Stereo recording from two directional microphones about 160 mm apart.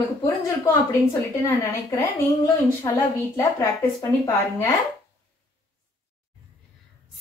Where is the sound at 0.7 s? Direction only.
15° left (ahead or behind).